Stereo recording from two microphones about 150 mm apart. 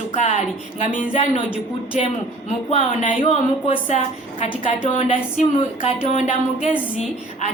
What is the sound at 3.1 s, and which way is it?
A woman's voice, 40° left (ahead or behind).